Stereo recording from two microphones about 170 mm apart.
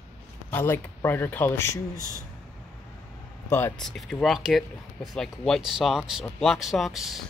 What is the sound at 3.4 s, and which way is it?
Speech, 10° left (ahead or behind).